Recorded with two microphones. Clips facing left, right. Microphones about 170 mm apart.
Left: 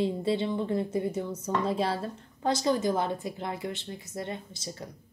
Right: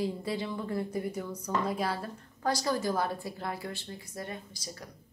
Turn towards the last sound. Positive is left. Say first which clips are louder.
# left 4 dB
turn(degrees=25)  # may be behind; listen again after turning